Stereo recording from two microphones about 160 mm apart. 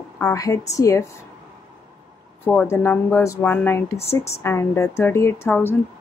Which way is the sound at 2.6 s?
15° left (ahead or behind).